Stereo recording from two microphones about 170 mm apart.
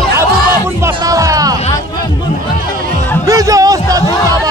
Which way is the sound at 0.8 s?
20° right (ahead or behind).